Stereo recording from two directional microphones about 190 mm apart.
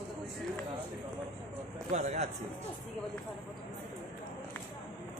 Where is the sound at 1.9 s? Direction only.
35° right (ahead or behind).